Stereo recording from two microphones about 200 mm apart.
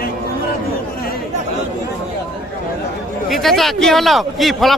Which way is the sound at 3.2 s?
Centre (ahead or behind).